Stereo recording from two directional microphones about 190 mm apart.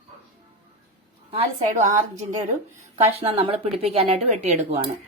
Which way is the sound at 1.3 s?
35° right (ahead or behind).